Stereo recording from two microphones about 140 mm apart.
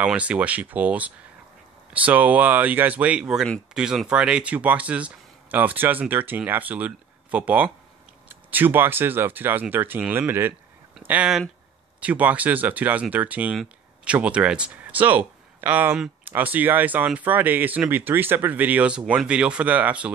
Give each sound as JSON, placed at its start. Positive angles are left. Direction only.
{"t": 0.0, "sound": "speech", "side_deg": -10}